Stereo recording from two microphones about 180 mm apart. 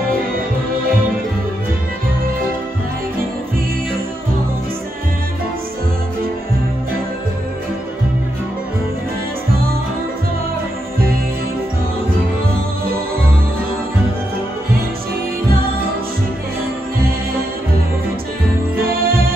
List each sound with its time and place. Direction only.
18.9 s music: 55° right (ahead or behind)